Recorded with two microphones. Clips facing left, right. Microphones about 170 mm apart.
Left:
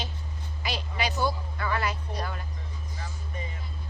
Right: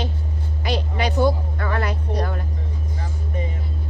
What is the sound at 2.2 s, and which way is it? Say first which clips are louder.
Music: right 8 dB; 55° right (ahead or behind).